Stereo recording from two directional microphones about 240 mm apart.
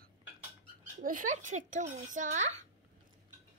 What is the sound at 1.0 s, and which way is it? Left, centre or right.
A child's voice, right.